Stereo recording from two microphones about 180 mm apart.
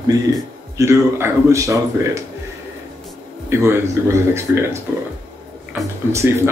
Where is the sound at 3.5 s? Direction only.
15° right (ahead or behind).